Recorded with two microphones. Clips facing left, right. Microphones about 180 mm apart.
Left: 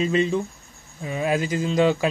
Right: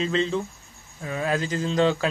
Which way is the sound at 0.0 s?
10° left (ahead or behind).